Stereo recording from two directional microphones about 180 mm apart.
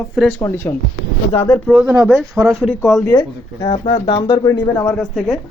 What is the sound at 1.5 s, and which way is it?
Speech, 5° right (ahead or behind).